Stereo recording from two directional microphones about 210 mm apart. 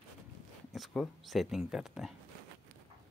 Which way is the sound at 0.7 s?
Centre (ahead or behind).